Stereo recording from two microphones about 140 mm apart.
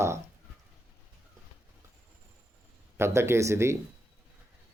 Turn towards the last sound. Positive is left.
turn(degrees=-20)  # may be behind; listen again after turning